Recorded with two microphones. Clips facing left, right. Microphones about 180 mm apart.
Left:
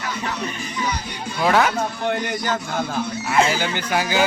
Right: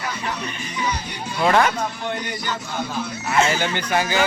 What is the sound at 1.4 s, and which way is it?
Speech, 5° left (ahead or behind).